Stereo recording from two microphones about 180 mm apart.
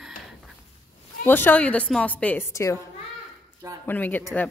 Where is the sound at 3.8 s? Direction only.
10° left (ahead or behind).